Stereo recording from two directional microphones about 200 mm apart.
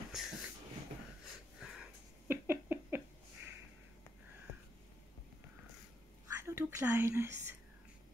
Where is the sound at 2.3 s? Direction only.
10° right (ahead or behind).